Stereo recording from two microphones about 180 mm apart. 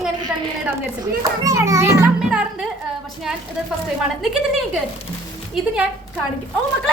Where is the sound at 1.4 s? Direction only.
15° right (ahead or behind).